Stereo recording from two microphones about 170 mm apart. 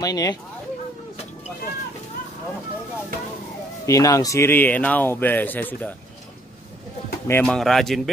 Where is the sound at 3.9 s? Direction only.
20° left (ahead or behind).